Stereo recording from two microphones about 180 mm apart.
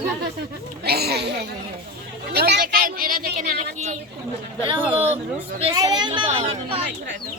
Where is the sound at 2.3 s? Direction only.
60° right (ahead or behind).